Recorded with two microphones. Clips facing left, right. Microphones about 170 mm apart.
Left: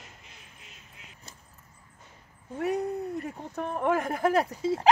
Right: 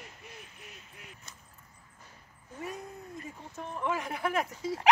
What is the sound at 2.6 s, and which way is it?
Speech, 70° left (ahead or behind).